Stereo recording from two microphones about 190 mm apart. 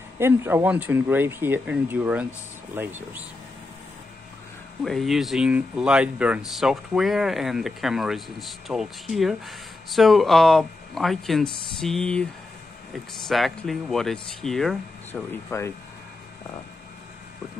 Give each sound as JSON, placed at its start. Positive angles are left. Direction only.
{"t": 0.2, "sound": "speech", "side_deg": -10}
{"t": 4.8, "sound": "speech", "side_deg": 0}
{"t": 15.3, "sound": "speech", "side_deg": 15}